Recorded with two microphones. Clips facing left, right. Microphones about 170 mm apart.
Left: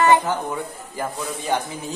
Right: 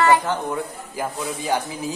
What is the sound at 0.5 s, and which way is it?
A man's voice, centre (ahead or behind).